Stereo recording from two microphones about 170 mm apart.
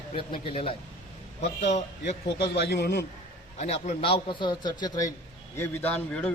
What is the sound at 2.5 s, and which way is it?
Speech, 75° left (ahead or behind).